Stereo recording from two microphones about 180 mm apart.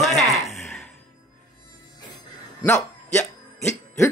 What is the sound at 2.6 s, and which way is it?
Speech, 10° left (ahead or behind).